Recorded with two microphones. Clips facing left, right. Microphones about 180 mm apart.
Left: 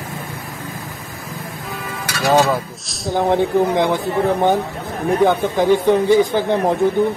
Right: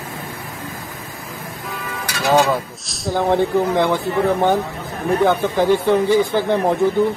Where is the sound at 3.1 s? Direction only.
15° left (ahead or behind).